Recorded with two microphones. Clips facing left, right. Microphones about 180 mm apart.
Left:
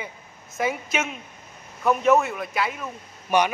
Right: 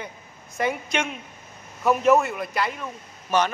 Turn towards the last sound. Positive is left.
turn(degrees=15)  # may be behind; listen again after turning